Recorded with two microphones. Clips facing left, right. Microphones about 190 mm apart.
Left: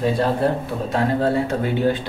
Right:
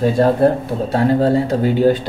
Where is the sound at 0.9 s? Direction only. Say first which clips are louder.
Right 5 dB; 35° right (ahead or behind).